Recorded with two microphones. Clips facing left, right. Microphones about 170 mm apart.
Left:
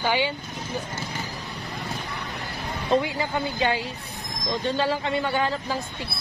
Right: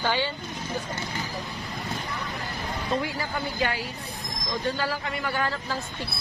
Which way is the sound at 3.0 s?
20° left (ahead or behind).